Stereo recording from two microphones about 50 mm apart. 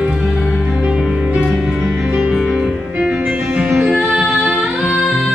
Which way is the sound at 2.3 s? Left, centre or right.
Centre.